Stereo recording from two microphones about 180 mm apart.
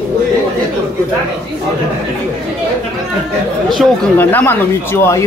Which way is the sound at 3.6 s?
5° left (ahead or behind).